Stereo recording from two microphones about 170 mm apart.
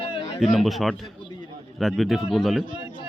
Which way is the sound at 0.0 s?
30° left (ahead or behind).